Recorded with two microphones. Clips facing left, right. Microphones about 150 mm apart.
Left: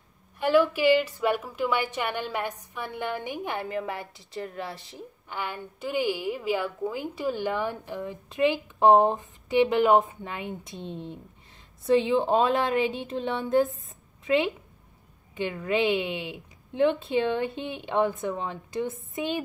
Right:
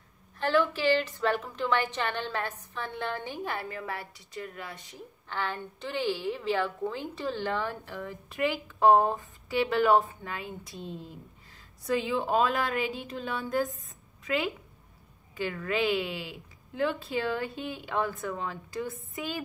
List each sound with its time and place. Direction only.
0.4 s a woman's voice: 10° left (ahead or behind); by 5.0 s 30° left (ahead or behind)
5.3 s a woman's voice: 10° left (ahead or behind)